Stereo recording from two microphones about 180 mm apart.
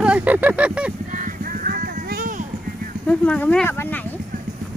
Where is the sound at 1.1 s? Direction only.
50° right (ahead or behind).